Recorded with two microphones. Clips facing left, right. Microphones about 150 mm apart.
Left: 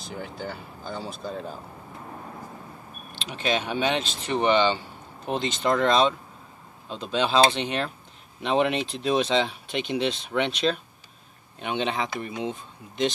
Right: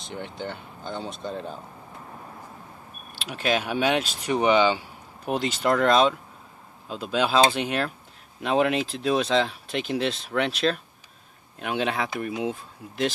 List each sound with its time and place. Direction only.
0.0 s speech: 5° left (ahead or behind)
3.1 s speech: 5° right (ahead or behind)